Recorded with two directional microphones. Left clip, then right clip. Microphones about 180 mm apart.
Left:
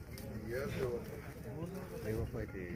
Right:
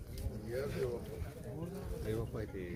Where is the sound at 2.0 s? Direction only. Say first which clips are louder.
Right 1 dB; 20° right (ahead or behind).